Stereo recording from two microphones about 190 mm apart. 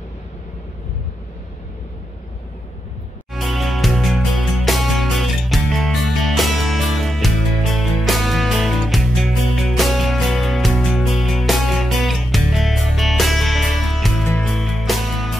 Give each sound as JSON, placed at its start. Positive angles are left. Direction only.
{"t": 3.3, "sound": "music", "side_deg": 0}